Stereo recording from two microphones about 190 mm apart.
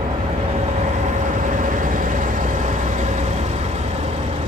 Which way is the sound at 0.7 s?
40° right (ahead or behind).